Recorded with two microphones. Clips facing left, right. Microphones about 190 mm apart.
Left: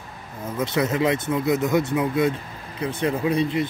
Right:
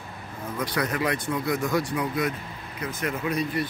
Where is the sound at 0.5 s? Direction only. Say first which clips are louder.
Left 5 dB; 25° left (ahead or behind).